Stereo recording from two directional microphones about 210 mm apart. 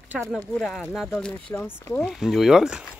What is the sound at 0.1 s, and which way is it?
Speech, 10° right (ahead or behind).